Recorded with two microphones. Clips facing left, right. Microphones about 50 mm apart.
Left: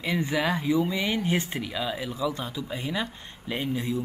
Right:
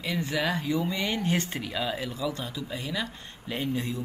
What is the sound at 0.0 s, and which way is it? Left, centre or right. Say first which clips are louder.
Speech: left 2 dB; left.